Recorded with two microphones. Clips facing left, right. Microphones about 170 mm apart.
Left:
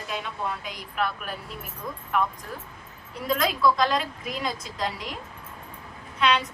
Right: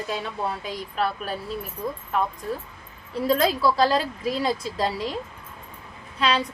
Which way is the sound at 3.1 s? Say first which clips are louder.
Right 5 dB; 30° right (ahead or behind).